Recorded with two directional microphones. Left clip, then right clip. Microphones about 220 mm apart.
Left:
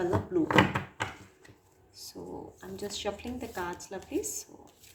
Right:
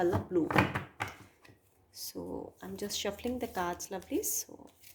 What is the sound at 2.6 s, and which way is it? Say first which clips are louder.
Speech: left 1 dB; 45° right (ahead or behind).